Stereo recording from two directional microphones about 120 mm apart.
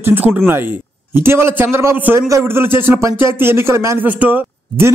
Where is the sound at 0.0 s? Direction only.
15° right (ahead or behind).